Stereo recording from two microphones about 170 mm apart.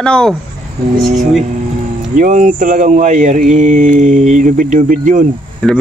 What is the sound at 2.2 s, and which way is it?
Speech, 50° right (ahead or behind).